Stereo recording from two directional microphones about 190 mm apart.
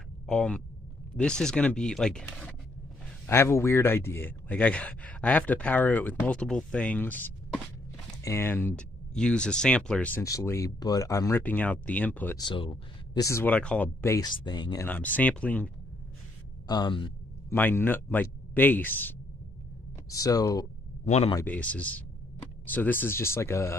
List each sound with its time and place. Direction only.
0.3 s speech: 5° left (ahead or behind)
12.4 s speech: 25° left (ahead or behind)
14.9 s speech: 10° left (ahead or behind)
16.6 s speech: 20° left (ahead or behind)
17.5 s speech: 10° left (ahead or behind)
21.0 s speech: 35° left (ahead or behind)
21.5 s speech: 10° left (ahead or behind)